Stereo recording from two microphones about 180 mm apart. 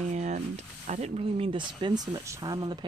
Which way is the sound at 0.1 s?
40° right (ahead or behind).